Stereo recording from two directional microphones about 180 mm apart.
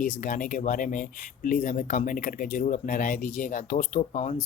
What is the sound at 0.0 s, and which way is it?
Speech, 45° left (ahead or behind).